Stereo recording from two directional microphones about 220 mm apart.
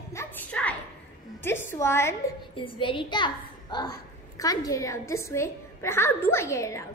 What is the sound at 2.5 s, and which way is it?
A woman's voice, 25° left (ahead or behind).